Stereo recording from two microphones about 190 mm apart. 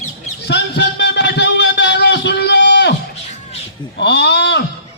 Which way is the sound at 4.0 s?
65° left (ahead or behind).